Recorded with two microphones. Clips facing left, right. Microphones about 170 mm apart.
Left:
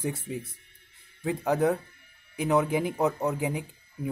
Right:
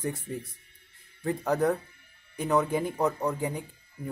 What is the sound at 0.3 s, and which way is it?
Speech, 5° left (ahead or behind).